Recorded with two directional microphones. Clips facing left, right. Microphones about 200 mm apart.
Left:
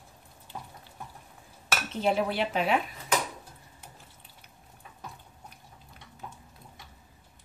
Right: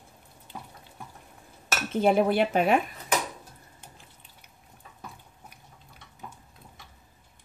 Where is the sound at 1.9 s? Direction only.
50° right (ahead or behind).